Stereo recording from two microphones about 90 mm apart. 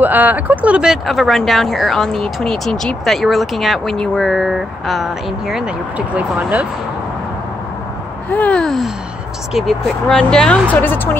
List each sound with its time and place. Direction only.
0.0 s speech: 20° right (ahead or behind); by 5.7 s 5° right (ahead or behind)
5.9 s speech: 15° right (ahead or behind)
8.3 s speech: 15° left (ahead or behind)
10.7 s a woman's voice: 20° left (ahead or behind)